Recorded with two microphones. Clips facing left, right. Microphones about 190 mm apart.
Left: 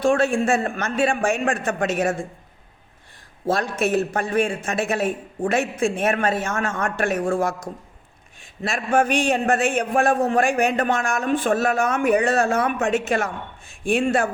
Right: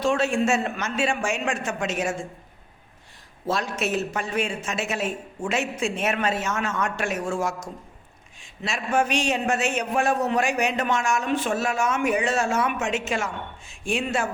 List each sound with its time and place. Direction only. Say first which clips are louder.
0.0 s a man's voice: left 3 dB; 55° left (ahead or behind)
3.4 s a man's voice: left 4 dB; 55° left (ahead or behind)